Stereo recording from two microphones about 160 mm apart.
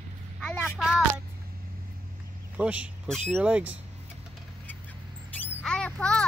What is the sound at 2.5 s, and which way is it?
Speech, 10° right (ahead or behind).